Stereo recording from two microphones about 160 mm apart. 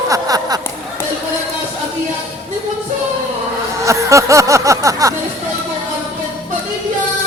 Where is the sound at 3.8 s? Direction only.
20° right (ahead or behind).